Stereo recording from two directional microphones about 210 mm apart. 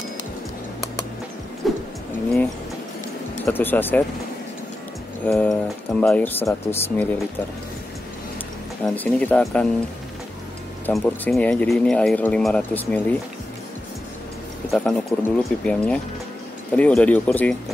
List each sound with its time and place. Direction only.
1.6 s vehicle: centre (ahead or behind)
3.4 s speech: 10° left (ahead or behind)
5.2 s speech: 5° left (ahead or behind)
8.8 s speech: 5° left (ahead or behind)
10.9 s speech: centre (ahead or behind)
14.7 s speech: 5° left (ahead or behind)